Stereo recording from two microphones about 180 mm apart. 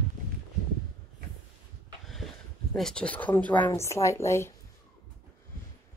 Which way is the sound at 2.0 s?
Centre (ahead or behind).